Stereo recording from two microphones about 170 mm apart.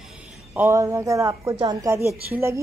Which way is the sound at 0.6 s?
15° right (ahead or behind).